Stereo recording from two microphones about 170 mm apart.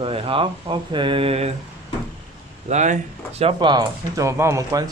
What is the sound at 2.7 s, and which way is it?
Speech, 45° right (ahead or behind).